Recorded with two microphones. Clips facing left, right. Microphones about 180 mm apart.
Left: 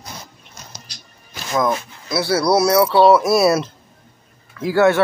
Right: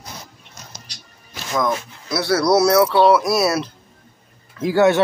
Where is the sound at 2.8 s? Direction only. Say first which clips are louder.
Left 2 dB; centre (ahead or behind).